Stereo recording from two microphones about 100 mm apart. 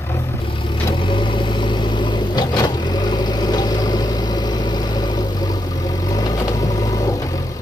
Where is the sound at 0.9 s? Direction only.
55° left (ahead or behind); by 7.2 s 35° left (ahead or behind).